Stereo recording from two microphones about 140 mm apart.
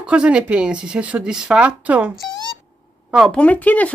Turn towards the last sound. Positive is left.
turn(degrees=10)  # may be behind; listen again after turning